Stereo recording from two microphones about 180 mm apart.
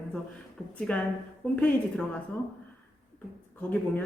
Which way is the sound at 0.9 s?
10° left (ahead or behind).